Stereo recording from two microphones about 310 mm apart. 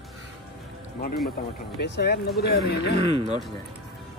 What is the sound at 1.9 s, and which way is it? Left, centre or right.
Speech, left.